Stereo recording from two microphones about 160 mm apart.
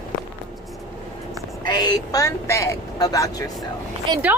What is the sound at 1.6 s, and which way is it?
Speech, 25° left (ahead or behind).